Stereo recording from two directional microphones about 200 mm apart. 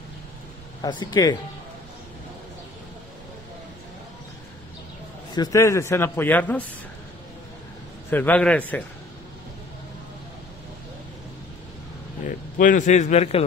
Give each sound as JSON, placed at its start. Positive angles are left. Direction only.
{"t": 0.8, "sound": "speech", "side_deg": 20}
{"t": 5.3, "sound": "a man's voice", "side_deg": 15}
{"t": 8.1, "sound": "a man's voice", "side_deg": 10}
{"t": 12.2, "sound": "a man's voice", "side_deg": 40}